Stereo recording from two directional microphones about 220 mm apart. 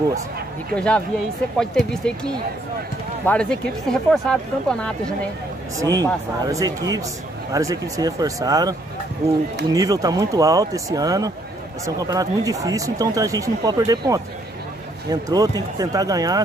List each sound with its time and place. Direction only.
0.7 s speech: 5° left (ahead or behind)
5.8 s speech: 15° right (ahead or behind)